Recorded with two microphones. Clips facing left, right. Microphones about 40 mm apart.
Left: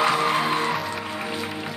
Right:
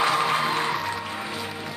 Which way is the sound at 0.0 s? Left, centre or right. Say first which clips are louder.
Left 1 dB; centre.